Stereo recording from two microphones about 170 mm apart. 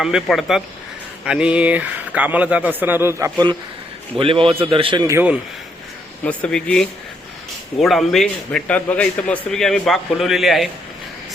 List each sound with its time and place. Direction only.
0.0 s a man's voice: 5° right (ahead or behind); by 3.5 s 20° right (ahead or behind)
4.2 s a man's voice: 30° right (ahead or behind)
5.0 s speech: 10° right (ahead or behind)
6.2 s a man's voice: 5° left (ahead or behind)